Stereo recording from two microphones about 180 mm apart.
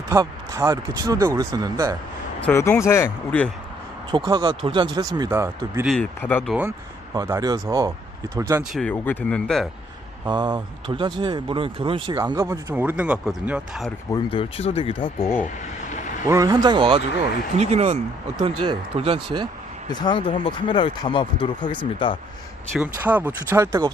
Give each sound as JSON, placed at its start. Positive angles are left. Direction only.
{"t": 0.1, "sound": "speech", "side_deg": -15}
{"t": 2.5, "sound": "speech", "side_deg": 15}
{"t": 4.1, "sound": "speech", "side_deg": -25}
{"t": 5.8, "sound": "speech", "side_deg": 5}
{"t": 6.6, "sound": "speech", "side_deg": -15}
{"t": 8.7, "sound": "speech", "side_deg": 5}
{"t": 10.2, "sound": "speech", "side_deg": -25}
{"t": 12.2, "sound": "speech", "side_deg": -15}
{"t": 14.1, "sound": "speech", "side_deg": 25}
{"t": 16.3, "sound": "speech", "side_deg": -20}
{"t": 17.6, "sound": "speech", "side_deg": -40}
{"t": 19.9, "sound": "speech", "side_deg": 25}
{"t": 22.7, "sound": "speech", "side_deg": -10}